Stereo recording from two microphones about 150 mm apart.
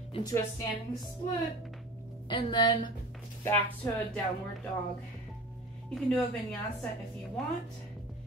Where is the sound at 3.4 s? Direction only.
15° left (ahead or behind).